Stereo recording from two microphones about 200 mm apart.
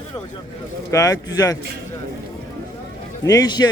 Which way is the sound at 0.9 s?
15° left (ahead or behind).